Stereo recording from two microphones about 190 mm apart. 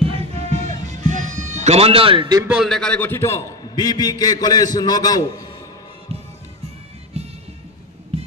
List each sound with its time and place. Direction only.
0.0 s music: 30° right (ahead or behind)
2.4 s a man's voice: 5° right (ahead or behind); by 5.5 s 20° left (ahead or behind)
7.2 s music: 35° right (ahead or behind)